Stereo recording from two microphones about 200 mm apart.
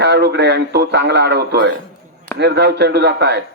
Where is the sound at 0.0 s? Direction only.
55° right (ahead or behind).